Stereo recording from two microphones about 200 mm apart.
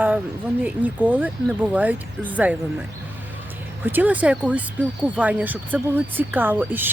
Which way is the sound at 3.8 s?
10° right (ahead or behind).